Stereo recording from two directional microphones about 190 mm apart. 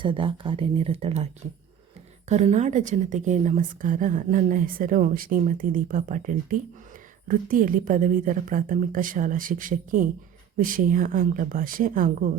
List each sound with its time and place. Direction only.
0.0 s speech: 25° right (ahead or behind)
2.3 s a woman's voice: 35° right (ahead or behind)